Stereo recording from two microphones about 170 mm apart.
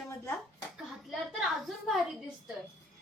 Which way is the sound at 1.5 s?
Centre (ahead or behind).